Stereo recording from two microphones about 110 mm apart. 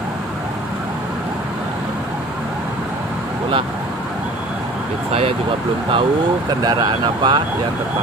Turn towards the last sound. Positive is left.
turn(degrees=-45)  # may be behind; listen again after turning